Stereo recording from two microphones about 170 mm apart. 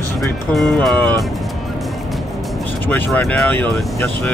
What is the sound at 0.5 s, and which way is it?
Speech, centre (ahead or behind).